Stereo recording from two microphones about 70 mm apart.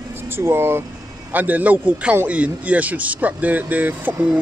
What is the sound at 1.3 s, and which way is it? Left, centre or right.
A man's voice, right.